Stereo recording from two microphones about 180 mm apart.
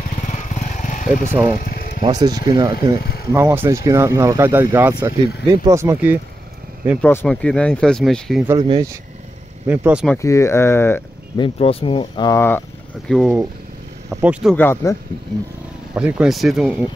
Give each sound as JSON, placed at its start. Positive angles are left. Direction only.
{"t": 0.3, "sound": "vehicle", "side_deg": 40}
{"t": 1.3, "sound": "speech", "side_deg": -15}
{"t": 1.6, "sound": "vehicle", "side_deg": 55}
{"t": 2.0, "sound": "speech", "side_deg": -20}
{"t": 3.0, "sound": "a sound", "side_deg": 60}
{"t": 3.3, "sound": "speech", "side_deg": -15}
{"t": 7.0, "sound": "speech", "side_deg": 10}
{"t": 8.5, "sound": "speech", "side_deg": -25}
{"t": 9.7, "sound": "speech", "side_deg": -10}
{"t": 10.1, "sound": "speech", "side_deg": 15}
{"t": 11.3, "sound": "speech", "side_deg": 30}
{"t": 13.1, "sound": "speech", "side_deg": -5}
{"t": 14.5, "sound": "speech", "side_deg": 10}
{"t": 15.9, "sound": "speech", "side_deg": -5}